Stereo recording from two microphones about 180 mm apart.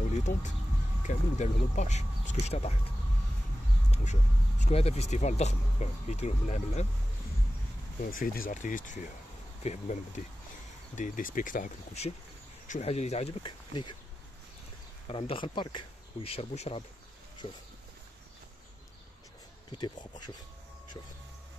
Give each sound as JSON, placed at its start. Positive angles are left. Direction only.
{"t": 0.1, "sound": "speech", "side_deg": 40}
{"t": 3.9, "sound": "speech", "side_deg": 40}
{"t": 8.0, "sound": "speech", "side_deg": 50}
{"t": 15.0, "sound": "speech", "side_deg": 30}
{"t": 19.8, "sound": "speech", "side_deg": 25}